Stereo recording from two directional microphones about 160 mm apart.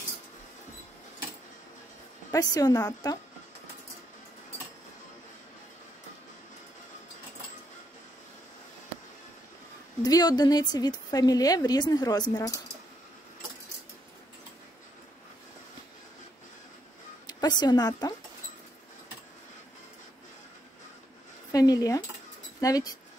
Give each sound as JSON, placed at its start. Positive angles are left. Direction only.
{"t": 2.3, "sound": "a woman's voice", "side_deg": 25}
{"t": 10.0, "sound": "a woman's voice", "side_deg": 25}
{"t": 17.3, "sound": "a woman's voice", "side_deg": 25}
{"t": 21.5, "sound": "a woman's voice", "side_deg": 25}